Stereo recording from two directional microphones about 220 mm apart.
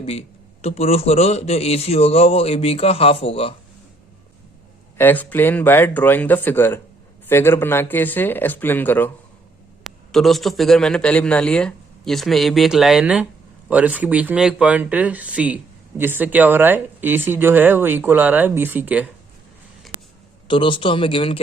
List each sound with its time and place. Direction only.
0.0 s a man's voice: 25° left (ahead or behind)
4.9 s a man's voice: 10° left (ahead or behind); by 19.0 s 10° right (ahead or behind)
20.5 s a man's voice: 20° left (ahead or behind)